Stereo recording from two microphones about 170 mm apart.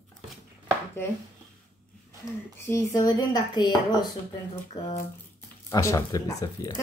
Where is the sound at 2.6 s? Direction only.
20° left (ahead or behind).